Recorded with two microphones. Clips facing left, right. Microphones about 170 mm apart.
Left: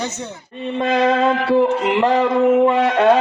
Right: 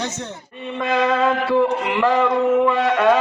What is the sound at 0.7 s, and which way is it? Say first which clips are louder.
A man's voice: left 3 dB; 30° left (ahead or behind).